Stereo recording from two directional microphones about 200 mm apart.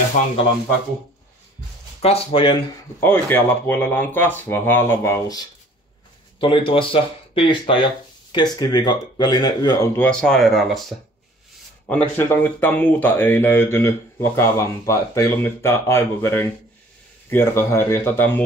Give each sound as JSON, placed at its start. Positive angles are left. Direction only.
{"t": 0.2, "sound": "speech", "side_deg": 40}
{"t": 2.0, "sound": "speech", "side_deg": 30}
{"t": 3.0, "sound": "speech", "side_deg": 10}
{"t": 10.0, "sound": "speech", "side_deg": 5}